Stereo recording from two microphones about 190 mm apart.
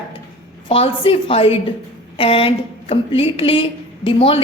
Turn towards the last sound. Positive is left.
turn(degrees=30)  # may be behind; listen again after turning